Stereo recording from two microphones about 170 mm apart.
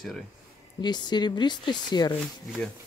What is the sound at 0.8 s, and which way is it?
Speech, 25° left (ahead or behind).